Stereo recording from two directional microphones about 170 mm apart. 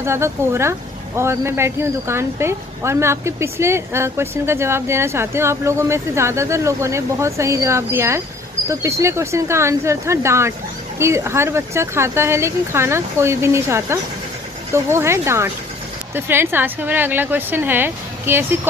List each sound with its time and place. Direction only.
0.0 s speech: 15° right (ahead or behind)